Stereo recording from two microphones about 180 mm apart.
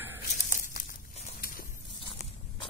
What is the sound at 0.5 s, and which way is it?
Crumpling, 45° left (ahead or behind).